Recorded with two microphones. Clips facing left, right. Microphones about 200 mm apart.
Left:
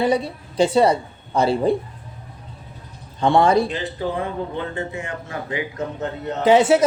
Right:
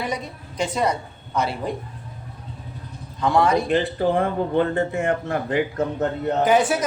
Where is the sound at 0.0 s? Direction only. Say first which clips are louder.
Left 8 dB; 30° left (ahead or behind).